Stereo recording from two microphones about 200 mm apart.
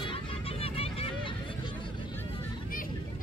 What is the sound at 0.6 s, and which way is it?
Vehicle, 30° left (ahead or behind).